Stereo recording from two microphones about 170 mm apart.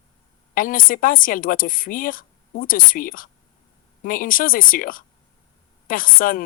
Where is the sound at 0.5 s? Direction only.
55° left (ahead or behind).